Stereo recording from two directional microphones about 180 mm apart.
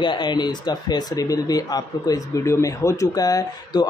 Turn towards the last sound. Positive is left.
turn(degrees=20)  # may be behind; listen again after turning